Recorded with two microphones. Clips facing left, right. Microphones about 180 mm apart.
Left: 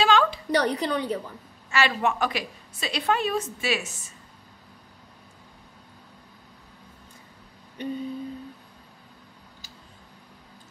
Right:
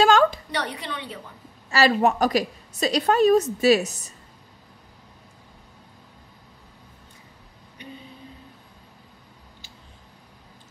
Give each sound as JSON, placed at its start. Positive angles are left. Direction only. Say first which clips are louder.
{"t": 0.0, "sound": "a sound", "louder": "right 4 dB", "side_deg": -45}
{"t": 0.5, "sound": "a woman's voice", "louder": "left 7 dB", "side_deg": 40}
{"t": 1.7, "sound": "a woman's voice", "louder": "right 5 dB", "side_deg": -40}